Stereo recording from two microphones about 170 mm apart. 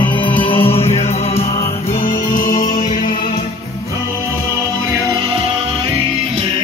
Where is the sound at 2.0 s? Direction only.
50° left (ahead or behind).